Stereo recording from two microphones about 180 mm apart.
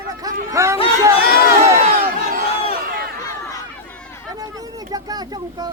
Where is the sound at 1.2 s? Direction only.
55° left (ahead or behind).